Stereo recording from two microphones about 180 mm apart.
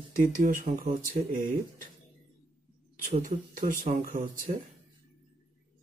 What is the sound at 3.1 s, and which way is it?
Speech, 45° right (ahead or behind).